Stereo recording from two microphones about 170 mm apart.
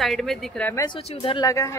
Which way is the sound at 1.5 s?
20° left (ahead or behind).